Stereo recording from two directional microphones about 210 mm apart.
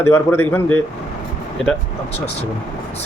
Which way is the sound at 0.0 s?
10° left (ahead or behind).